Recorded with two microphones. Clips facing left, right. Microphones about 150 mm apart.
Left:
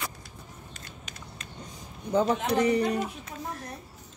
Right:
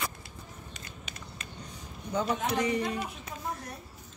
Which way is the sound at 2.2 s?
30° left (ahead or behind).